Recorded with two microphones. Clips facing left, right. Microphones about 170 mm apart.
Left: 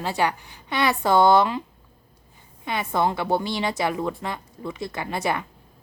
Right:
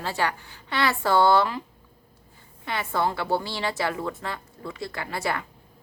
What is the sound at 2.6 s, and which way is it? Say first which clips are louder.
A woman's voice: left 3 dB; 15° left (ahead or behind).